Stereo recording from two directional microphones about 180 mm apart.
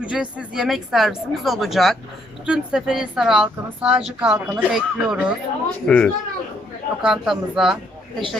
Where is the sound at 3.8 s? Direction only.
35° right (ahead or behind).